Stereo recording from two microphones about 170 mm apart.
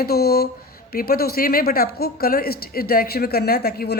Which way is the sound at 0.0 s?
65° left (ahead or behind).